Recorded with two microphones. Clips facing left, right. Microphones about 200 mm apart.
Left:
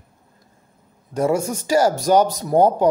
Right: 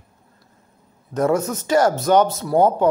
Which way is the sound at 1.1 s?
10° left (ahead or behind).